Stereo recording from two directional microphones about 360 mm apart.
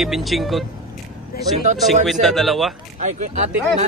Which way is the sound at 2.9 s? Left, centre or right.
Centre.